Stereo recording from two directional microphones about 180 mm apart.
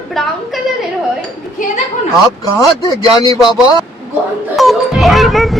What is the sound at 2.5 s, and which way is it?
Speech, 20° left (ahead or behind).